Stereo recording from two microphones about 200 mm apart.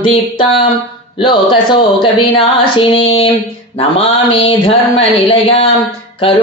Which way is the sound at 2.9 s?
25° left (ahead or behind).